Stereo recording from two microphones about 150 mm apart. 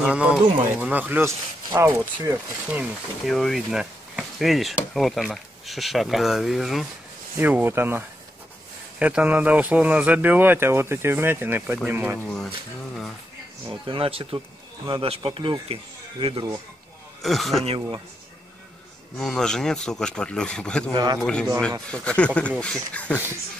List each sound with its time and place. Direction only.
0.0 s speech: 5° right (ahead or behind)
3.3 s speech: centre (ahead or behind)
7.3 s speech: 10° right (ahead or behind)
9.0 s speech: 10° right (ahead or behind)
12.2 s speech: 5° left (ahead or behind)
13.7 s speech: 35° right (ahead or behind)
17.2 s speech: centre (ahead or behind)
17.7 s speech: 30° right (ahead or behind)
19.1 s speech: 5° left (ahead or behind)
20.9 s speech: 25° right (ahead or behind)
21.2 s speech: 5° left (ahead or behind)